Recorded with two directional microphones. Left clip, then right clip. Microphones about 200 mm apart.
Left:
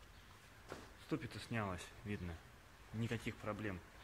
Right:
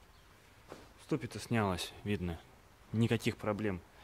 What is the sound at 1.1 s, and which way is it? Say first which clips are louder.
Speech: right 8 dB; 60° right (ahead or behind).